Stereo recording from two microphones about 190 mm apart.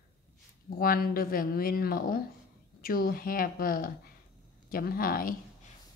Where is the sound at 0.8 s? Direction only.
50° left (ahead or behind).